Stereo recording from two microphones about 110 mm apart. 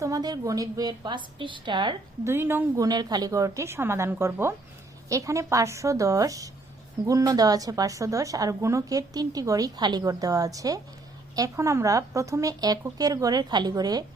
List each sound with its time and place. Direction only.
0.0 s a woman's voice: 35° right (ahead or behind)
2.2 s a woman's voice: 20° right (ahead or behind)
2.8 s a woman's voice: 35° right (ahead or behind)